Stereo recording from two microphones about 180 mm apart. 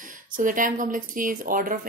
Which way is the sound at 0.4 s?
50° right (ahead or behind).